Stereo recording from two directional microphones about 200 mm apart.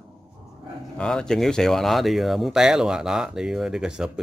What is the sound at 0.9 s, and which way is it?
Speech, 5° left (ahead or behind).